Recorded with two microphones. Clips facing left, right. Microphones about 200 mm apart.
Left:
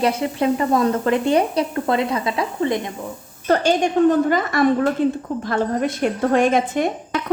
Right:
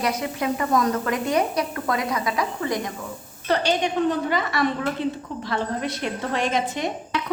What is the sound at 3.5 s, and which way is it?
Speech, 45° left (ahead or behind).